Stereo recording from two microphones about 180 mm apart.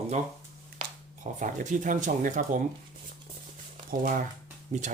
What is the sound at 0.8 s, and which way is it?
Speech, 45° right (ahead or behind).